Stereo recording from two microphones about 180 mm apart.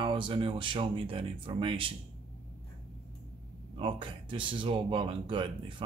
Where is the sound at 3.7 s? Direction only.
30° right (ahead or behind).